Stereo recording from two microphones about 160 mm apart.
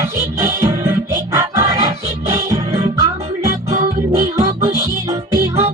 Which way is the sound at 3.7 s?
45° right (ahead or behind).